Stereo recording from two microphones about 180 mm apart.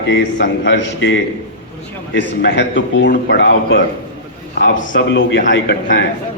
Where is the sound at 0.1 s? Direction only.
90° left; by 3.8 s 70° left (ahead or behind).